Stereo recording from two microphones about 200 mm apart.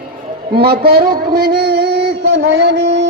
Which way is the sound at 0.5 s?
50° right (ahead or behind).